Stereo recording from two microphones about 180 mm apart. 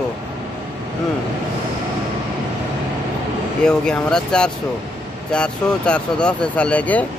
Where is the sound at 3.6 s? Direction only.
5° left (ahead or behind).